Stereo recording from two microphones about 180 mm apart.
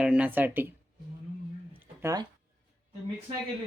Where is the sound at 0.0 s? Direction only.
5° right (ahead or behind).